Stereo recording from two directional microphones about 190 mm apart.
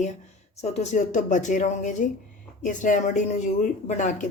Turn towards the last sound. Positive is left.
turn(degrees=40)  # may be behind; listen again after turning